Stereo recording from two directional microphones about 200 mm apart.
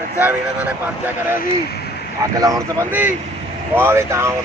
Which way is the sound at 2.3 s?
15° right (ahead or behind).